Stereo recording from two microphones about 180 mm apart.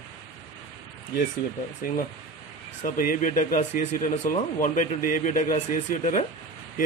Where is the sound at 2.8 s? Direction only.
50° left (ahead or behind).